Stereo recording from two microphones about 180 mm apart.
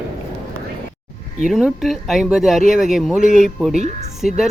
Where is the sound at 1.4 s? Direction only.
Centre (ahead or behind).